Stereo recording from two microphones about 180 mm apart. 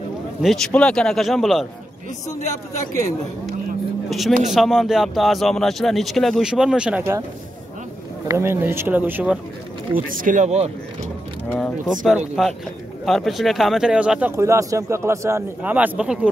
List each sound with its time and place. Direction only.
0.4 s speech: centre (ahead or behind)
4.3 s speech: 40° right (ahead or behind)
4.6 s speech: 5° right (ahead or behind)
8.3 s speech: 15° right (ahead or behind)
9.9 s speech: 50° right (ahead or behind)
11.5 s speech: centre (ahead or behind)